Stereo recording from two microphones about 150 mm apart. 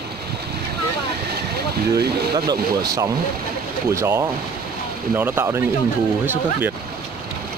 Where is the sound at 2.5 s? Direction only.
25° right (ahead or behind).